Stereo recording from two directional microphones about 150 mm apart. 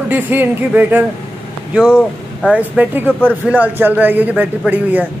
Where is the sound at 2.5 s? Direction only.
10° right (ahead or behind).